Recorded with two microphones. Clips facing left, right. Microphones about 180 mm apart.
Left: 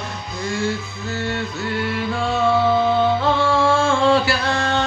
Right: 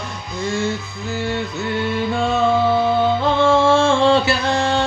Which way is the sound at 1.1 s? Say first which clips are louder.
Right 2 dB; 15° right (ahead or behind).